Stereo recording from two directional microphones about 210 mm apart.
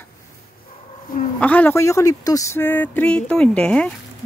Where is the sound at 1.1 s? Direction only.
45° left (ahead or behind).